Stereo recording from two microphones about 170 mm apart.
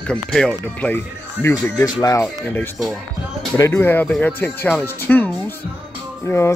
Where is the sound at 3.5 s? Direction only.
15° left (ahead or behind).